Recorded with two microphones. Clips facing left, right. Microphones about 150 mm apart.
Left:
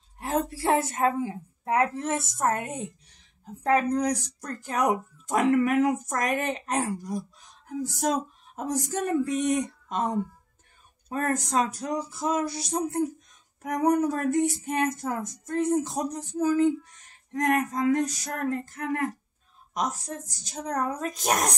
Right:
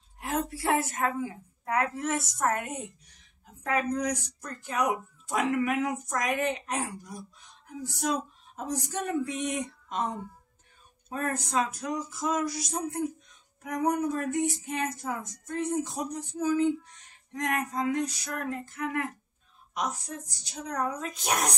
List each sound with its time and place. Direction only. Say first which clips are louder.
0.2 s a woman's voice: left 3 dB; 30° left (ahead or behind)
11.1 s speech: left 4 dB; 40° left (ahead or behind)
13.6 s a woman's voice: left 5 dB; 45° left (ahead or behind)